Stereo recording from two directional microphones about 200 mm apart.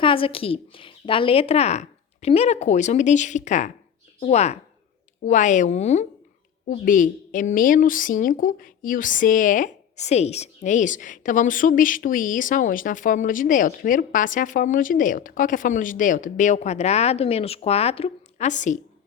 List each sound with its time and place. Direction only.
0.0 s a woman's voice: 25° left (ahead or behind)